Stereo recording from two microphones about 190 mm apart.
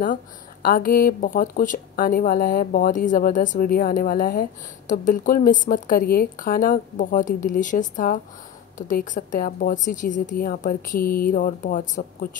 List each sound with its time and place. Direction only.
0.0 s speech: 45° left (ahead or behind)